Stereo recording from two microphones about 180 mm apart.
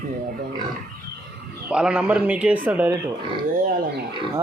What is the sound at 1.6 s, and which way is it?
A man's voice, 5° right (ahead or behind).